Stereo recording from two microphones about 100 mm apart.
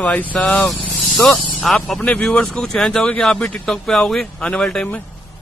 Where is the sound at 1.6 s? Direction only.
5° left (ahead or behind).